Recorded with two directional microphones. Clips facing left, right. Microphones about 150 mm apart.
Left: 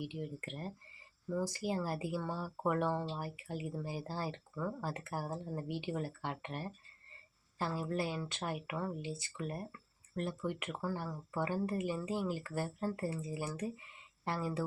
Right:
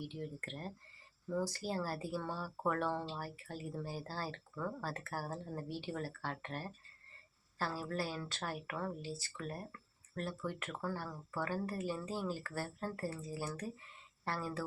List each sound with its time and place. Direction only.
0.0 s speech: 10° left (ahead or behind)